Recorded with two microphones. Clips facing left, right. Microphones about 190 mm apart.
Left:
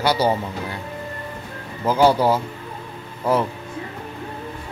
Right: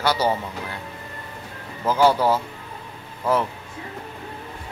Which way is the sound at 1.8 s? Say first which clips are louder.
Left 2 dB; 15° left (ahead or behind).